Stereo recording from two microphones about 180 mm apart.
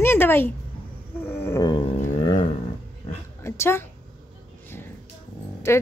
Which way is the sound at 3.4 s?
15° left (ahead or behind).